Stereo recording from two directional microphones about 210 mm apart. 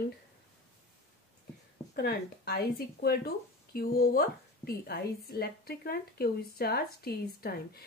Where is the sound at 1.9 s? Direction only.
50° left (ahead or behind).